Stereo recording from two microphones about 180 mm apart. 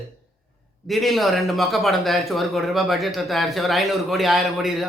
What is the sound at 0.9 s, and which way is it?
A man's voice, centre (ahead or behind).